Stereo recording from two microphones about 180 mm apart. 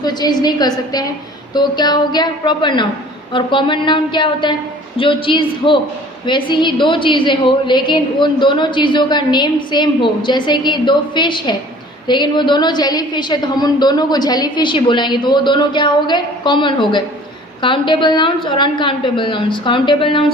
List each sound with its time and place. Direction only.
0.0 s a woman's voice: 25° left (ahead or behind)